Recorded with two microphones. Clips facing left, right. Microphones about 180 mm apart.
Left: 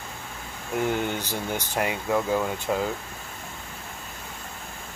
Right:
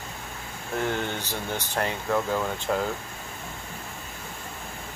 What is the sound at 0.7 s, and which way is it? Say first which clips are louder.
Speech: left 3 dB; 10° left (ahead or behind).